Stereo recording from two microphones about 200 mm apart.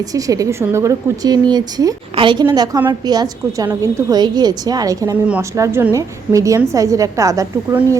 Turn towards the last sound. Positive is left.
turn(degrees=-15)  # may be behind; listen again after turning